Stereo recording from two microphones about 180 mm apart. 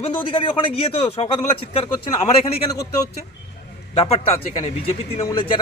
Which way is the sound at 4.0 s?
35° left (ahead or behind).